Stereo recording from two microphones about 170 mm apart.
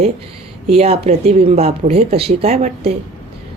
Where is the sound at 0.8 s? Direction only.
35° right (ahead or behind).